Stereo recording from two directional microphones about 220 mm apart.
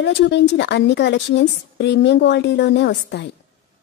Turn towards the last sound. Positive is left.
turn(degrees=50)  # may be behind; listen again after turning